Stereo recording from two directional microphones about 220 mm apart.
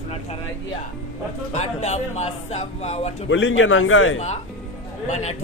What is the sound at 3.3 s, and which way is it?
Speech, 60° left (ahead or behind).